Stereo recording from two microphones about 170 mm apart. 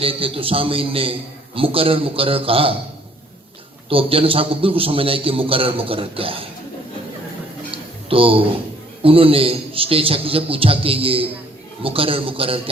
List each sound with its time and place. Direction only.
0.0 s a man's voice: 35° right (ahead or behind)
3.8 s a man's voice: 35° right (ahead or behind)
8.1 s a man's voice: 35° right (ahead or behind)